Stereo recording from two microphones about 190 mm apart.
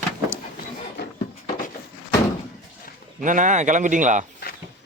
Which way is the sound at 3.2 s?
40° right (ahead or behind).